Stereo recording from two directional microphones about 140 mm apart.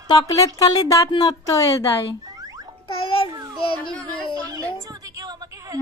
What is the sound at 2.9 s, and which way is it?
Babbling, 40° left (ahead or behind).